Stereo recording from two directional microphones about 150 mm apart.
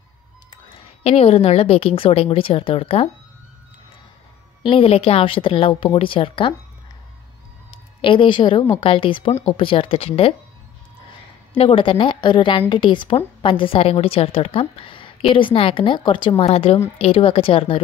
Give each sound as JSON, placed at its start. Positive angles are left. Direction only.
{"t": 0.5, "sound": "a woman's voice", "side_deg": 35}
{"t": 4.6, "sound": "a woman's voice", "side_deg": 40}
{"t": 7.7, "sound": "a woman's voice", "side_deg": 35}
{"t": 11.5, "sound": "a woman's voice", "side_deg": 35}